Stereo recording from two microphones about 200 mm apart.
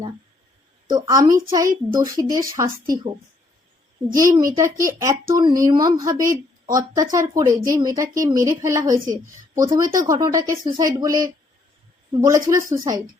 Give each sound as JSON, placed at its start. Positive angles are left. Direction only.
{"t": 0.9, "sound": "speech", "side_deg": -20}
{"t": 4.1, "sound": "speech", "side_deg": -15}